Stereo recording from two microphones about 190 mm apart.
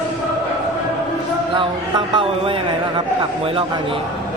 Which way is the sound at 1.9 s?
25° right (ahead or behind).